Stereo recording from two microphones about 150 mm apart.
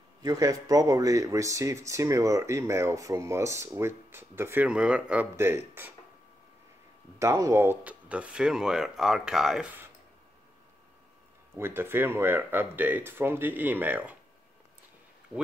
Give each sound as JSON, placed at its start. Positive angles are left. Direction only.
{"t": 0.2, "sound": "speech", "side_deg": -25}
{"t": 7.2, "sound": "speech", "side_deg": -20}
{"t": 11.5, "sound": "speech", "side_deg": -15}